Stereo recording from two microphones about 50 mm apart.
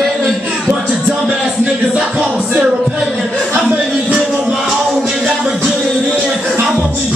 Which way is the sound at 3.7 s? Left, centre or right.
Right.